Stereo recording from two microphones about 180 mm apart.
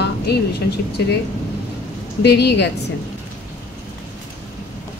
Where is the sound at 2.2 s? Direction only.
65° left (ahead or behind).